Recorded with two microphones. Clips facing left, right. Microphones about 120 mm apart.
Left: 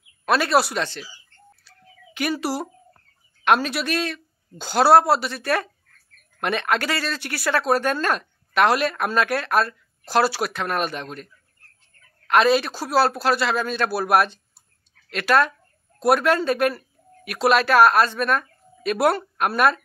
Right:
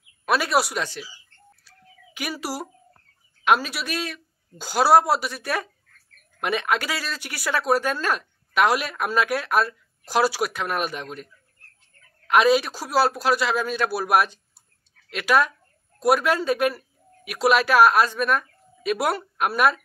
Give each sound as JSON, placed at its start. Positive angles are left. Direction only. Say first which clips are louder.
{"t": 0.2, "sound": "speech", "louder": "left 2 dB", "side_deg": -10}
{"t": 2.1, "sound": "speech", "louder": "left 5 dB", "side_deg": -10}
{"t": 12.3, "sound": "speech", "louder": "even", "side_deg": -10}